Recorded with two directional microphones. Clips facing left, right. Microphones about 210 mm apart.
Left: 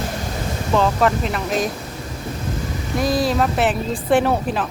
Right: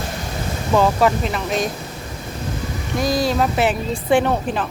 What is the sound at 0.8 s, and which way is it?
Speech, 5° right (ahead or behind).